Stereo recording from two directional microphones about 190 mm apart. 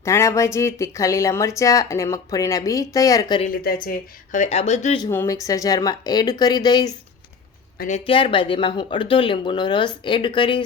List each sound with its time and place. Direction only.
0.0 s speech: 15° left (ahead or behind)
3.4 s speech: 50° left (ahead or behind)
5.0 s speech: 15° left (ahead or behind)
7.8 s speech: 35° left (ahead or behind)